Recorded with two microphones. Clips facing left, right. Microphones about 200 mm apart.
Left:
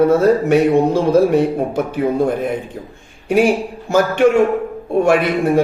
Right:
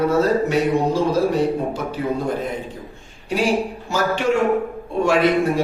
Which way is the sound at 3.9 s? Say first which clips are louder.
Left 7 dB; 55° left (ahead or behind).